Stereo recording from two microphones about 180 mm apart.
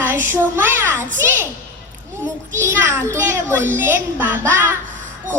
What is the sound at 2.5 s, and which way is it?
Child singing, 15° right (ahead or behind).